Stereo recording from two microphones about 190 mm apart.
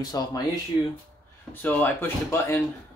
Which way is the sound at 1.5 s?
10° left (ahead or behind).